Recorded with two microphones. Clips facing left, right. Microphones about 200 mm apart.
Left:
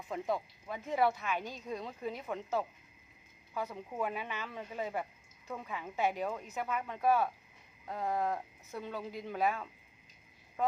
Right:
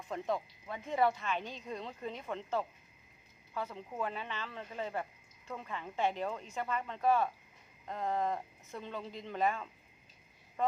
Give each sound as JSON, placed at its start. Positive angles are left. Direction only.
{"t": 0.1, "sound": "speech", "side_deg": 5}
{"t": 10.6, "sound": "frog", "side_deg": 0}